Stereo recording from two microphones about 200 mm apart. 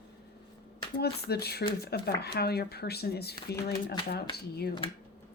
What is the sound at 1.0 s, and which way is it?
Speech, 55° left (ahead or behind).